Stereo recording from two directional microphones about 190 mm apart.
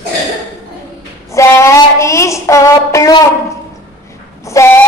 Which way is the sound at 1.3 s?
15° left (ahead or behind).